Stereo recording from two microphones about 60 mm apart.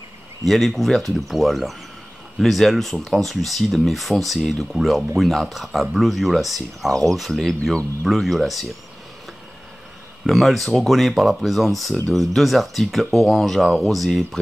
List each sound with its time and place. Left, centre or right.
0.5 s speech: centre
10.2 s speech: centre